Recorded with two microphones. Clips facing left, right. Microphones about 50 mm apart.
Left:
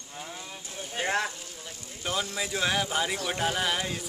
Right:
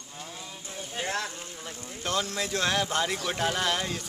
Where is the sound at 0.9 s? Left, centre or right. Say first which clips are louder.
Left 4 dB; left.